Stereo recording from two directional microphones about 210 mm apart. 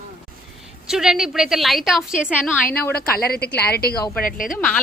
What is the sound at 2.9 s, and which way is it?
A woman's voice, 45° left (ahead or behind).